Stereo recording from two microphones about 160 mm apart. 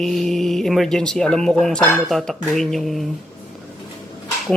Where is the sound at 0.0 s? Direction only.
Centre (ahead or behind).